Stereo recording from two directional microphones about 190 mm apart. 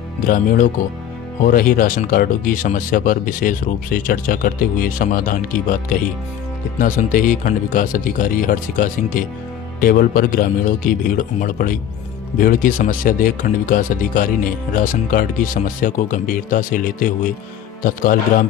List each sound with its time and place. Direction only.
0.2 s speech: 45° left (ahead or behind)